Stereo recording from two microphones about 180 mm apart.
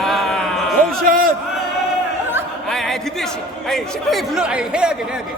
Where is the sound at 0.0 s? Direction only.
Centre (ahead or behind).